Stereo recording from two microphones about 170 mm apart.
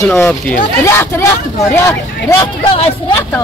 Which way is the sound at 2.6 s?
35° left (ahead or behind).